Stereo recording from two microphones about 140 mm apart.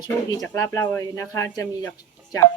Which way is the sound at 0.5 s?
20° left (ahead or behind).